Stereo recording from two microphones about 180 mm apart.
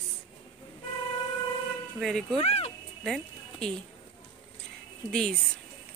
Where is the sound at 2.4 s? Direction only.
35° left (ahead or behind).